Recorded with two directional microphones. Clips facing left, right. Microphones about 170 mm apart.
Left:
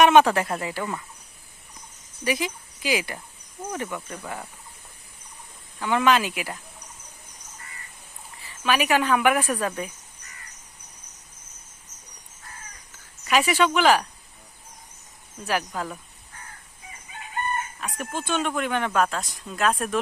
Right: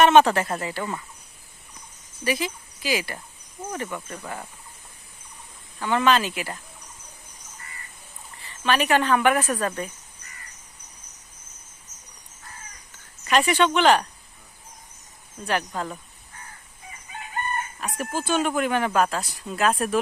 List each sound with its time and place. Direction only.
0.0 s speech: 10° left (ahead or behind)
2.2 s speech: 15° left (ahead or behind)
3.8 s speech: 5° left (ahead or behind)
5.8 s speech: 10° left (ahead or behind)
8.4 s speech: 10° left (ahead or behind)
13.2 s speech: 5° left (ahead or behind)
15.4 s speech: 5° left (ahead or behind)
17.7 s speech: centre (ahead or behind)